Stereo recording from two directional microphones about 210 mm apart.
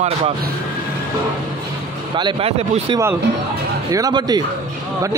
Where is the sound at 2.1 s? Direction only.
25° right (ahead or behind).